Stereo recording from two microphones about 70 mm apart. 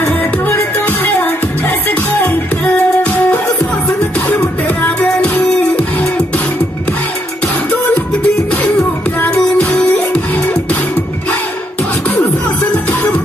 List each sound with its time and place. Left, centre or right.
0.0 s music: left
7.9 s music: left
12.7 s music: left